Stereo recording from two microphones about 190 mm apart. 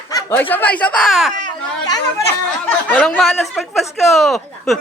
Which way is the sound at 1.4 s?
20° left (ahead or behind).